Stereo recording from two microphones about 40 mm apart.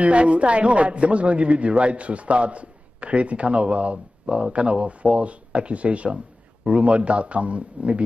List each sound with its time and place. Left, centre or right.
0.0 s a man's voice: right